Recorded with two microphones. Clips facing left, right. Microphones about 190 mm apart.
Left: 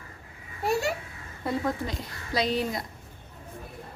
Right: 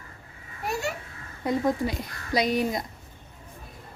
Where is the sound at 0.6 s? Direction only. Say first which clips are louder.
Left 4 dB; 30° left (ahead or behind).